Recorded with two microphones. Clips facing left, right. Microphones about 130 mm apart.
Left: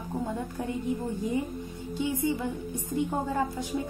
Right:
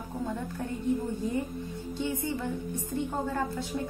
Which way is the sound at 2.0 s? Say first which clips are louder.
Left 4 dB; 15° left (ahead or behind).